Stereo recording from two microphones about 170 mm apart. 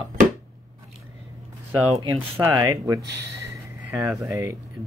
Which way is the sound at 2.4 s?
20° right (ahead or behind).